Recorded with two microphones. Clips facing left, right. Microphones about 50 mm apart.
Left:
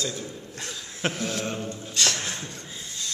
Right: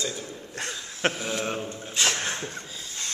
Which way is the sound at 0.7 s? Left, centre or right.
Centre.